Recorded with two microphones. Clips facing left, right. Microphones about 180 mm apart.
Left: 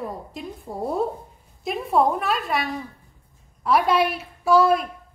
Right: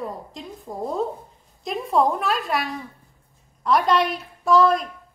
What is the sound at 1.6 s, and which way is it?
A woman's voice, 5° left (ahead or behind).